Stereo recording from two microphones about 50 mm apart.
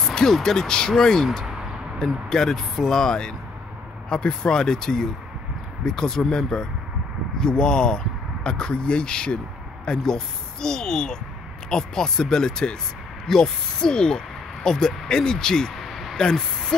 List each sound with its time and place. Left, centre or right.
0.0 s speech: centre
15.7 s a sound: centre
16.2 s speech: centre